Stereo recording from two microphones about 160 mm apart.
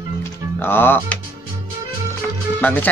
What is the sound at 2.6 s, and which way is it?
Speech, 10° left (ahead or behind).